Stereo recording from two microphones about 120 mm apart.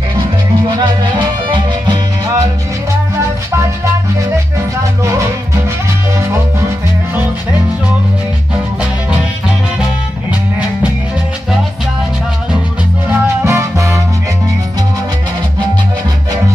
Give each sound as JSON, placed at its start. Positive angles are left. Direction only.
{"t": 0.7, "sound": "music", "side_deg": -40}
{"t": 13.5, "sound": "music", "side_deg": -20}